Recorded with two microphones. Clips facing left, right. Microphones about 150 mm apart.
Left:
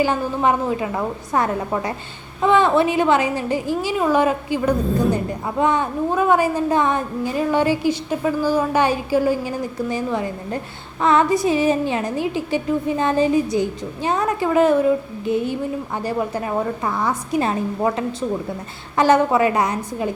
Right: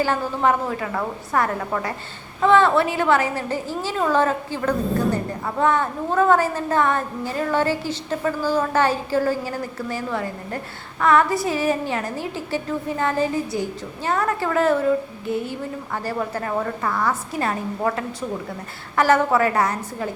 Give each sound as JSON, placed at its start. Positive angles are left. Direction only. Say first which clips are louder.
{"t": 0.0, "sound": "a woman's voice", "louder": "left 2 dB", "side_deg": 15}